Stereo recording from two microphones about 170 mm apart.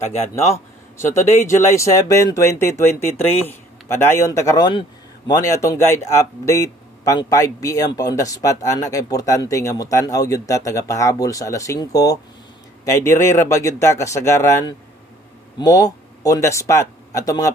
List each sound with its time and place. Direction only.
0.9 s a man's voice: 15° left (ahead or behind)